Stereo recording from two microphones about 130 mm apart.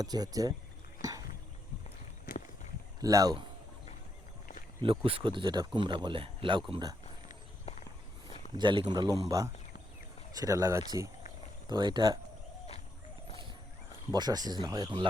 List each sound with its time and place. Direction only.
0.0 s speech: 30° right (ahead or behind)
2.3 s walk: 90° left
3.0 s speech: 30° right (ahead or behind)
4.8 s speech: 45° right (ahead or behind)
8.5 s speech: 35° right (ahead or behind)
11.7 s speech: 35° right (ahead or behind)
14.1 s speech: 30° right (ahead or behind)